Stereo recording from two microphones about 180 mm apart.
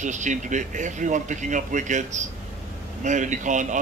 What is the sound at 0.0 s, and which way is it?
Speech, 45° right (ahead or behind).